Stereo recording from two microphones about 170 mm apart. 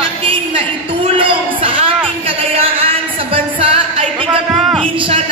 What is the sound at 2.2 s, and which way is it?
Music, 35° right (ahead or behind).